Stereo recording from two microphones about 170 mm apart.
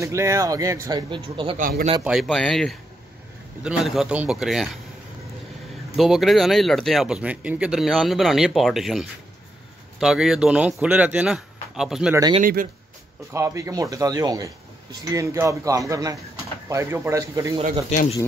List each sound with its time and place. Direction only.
0.0 s speech: 15° right (ahead or behind)
1.6 s a man's voice: 55° right (ahead or behind)
2.2 s speech: 5° left (ahead or behind)
5.9 s speech: centre (ahead or behind)
12.1 s speech: 20° right (ahead or behind)
12.4 s a man's voice: 55° right (ahead or behind)
13.3 s speech: 15° right (ahead or behind)